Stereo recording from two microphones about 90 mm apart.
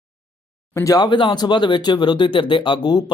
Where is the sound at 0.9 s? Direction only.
55° left (ahead or behind).